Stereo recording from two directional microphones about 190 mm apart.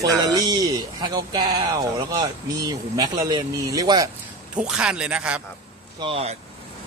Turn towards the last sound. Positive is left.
turn(degrees=-30)  # may be behind; listen again after turning